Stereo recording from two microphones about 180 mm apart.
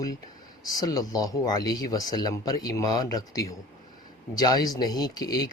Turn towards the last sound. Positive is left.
turn(degrees=20)  # may be behind; listen again after turning